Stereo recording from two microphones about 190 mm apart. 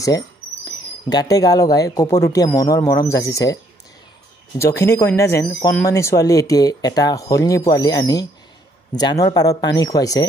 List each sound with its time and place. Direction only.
0.7 s speech: 20° left (ahead or behind)
4.6 s speech: 15° left (ahead or behind)